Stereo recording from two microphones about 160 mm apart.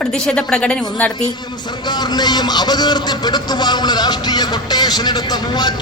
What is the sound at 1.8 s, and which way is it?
A man's voice, 25° left (ahead or behind).